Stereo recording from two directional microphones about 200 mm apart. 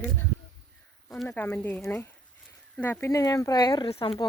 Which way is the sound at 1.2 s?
10° left (ahead or behind).